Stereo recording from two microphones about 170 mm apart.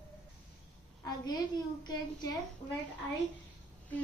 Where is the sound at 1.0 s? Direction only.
25° left (ahead or behind).